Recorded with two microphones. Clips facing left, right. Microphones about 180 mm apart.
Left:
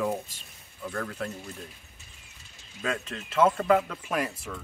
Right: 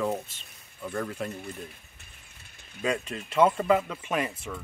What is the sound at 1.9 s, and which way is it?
Mechanisms, 60° right (ahead or behind).